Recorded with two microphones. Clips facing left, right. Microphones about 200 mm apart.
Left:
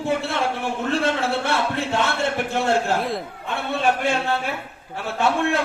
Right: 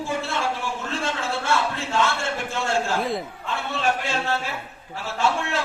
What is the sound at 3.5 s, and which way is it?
Speech, 55° left (ahead or behind).